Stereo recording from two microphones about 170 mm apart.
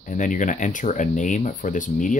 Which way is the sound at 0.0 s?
50° left (ahead or behind).